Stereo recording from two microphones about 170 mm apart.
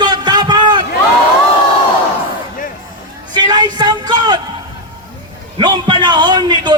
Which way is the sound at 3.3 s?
25° right (ahead or behind).